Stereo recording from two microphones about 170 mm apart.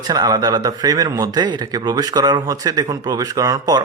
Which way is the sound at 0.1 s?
25° right (ahead or behind).